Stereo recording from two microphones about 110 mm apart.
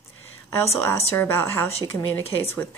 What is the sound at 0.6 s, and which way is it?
Speech, 25° left (ahead or behind).